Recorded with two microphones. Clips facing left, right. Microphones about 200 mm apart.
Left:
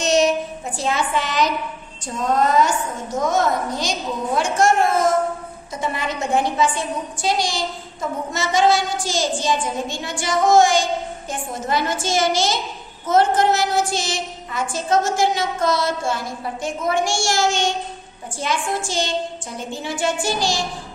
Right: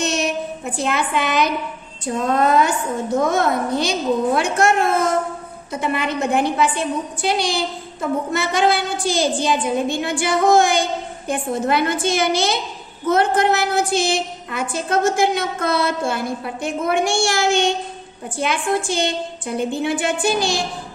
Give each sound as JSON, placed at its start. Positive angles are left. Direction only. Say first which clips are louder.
{"t": 0.0, "sound": "child singing", "louder": "left 4 dB", "side_deg": -60}
{"t": 2.0, "sound": "a woman's voice", "louder": "right 2 dB", "side_deg": -60}